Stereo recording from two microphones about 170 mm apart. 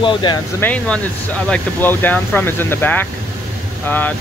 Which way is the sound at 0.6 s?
10° left (ahead or behind).